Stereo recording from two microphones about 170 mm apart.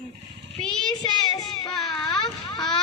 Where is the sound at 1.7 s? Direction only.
Centre (ahead or behind).